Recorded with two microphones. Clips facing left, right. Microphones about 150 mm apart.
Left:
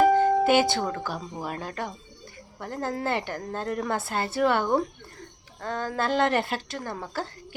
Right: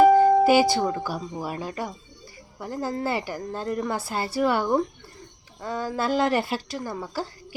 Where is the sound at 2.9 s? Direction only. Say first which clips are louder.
Even; 5° right (ahead or behind).